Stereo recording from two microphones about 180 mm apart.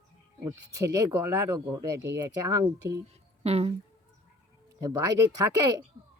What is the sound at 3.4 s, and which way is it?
Speech, 35° right (ahead or behind).